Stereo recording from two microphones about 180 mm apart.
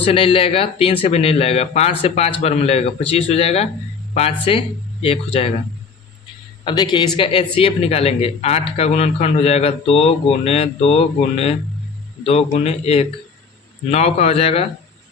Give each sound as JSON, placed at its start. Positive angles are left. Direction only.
{"t": 0.0, "sound": "speech", "side_deg": 30}
{"t": 6.7, "sound": "speech", "side_deg": 25}